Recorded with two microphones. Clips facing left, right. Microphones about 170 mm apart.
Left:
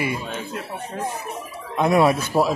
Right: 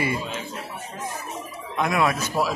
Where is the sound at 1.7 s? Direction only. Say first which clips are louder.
Left 5 dB; 30° left (ahead or behind).